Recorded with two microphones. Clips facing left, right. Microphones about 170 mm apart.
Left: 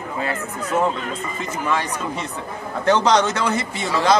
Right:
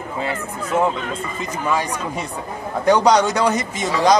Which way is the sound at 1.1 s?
10° right (ahead or behind).